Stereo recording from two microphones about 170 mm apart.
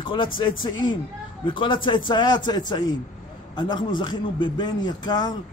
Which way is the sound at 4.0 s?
25° left (ahead or behind).